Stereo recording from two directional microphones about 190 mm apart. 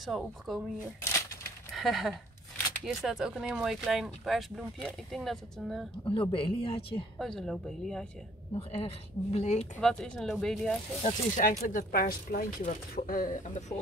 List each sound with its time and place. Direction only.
0.0 s speech: centre (ahead or behind)
1.7 s speech: centre (ahead or behind)
6.0 s speech: 25° left (ahead or behind)
7.2 s speech: centre (ahead or behind)
8.5 s speech: 30° left (ahead or behind)
9.8 s speech: 5° left (ahead or behind)
11.0 s speech: 40° left (ahead or behind)